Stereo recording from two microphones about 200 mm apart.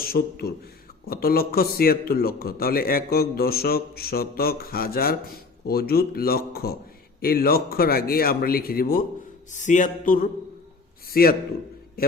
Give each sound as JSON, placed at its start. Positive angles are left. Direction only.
{"t": 0.0, "sound": "a man's voice", "side_deg": 50}
{"t": 9.5, "sound": "a sound", "side_deg": 40}
{"t": 11.1, "sound": "a man's voice", "side_deg": 50}